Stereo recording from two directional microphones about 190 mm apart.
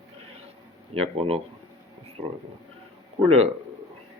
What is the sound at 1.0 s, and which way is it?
Speech, 30° right (ahead or behind).